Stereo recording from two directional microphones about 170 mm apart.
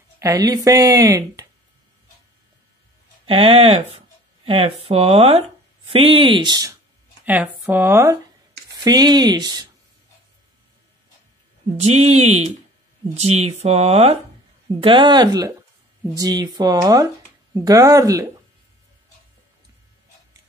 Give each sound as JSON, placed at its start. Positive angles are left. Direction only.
{"t": 0.2, "sound": "speech", "side_deg": -20}
{"t": 3.3, "sound": "speech", "side_deg": -35}
{"t": 7.2, "sound": "speech", "side_deg": -10}
{"t": 11.7, "sound": "speech", "side_deg": -40}